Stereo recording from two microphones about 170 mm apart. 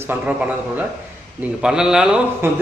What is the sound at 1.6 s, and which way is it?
Speech, 5° right (ahead or behind).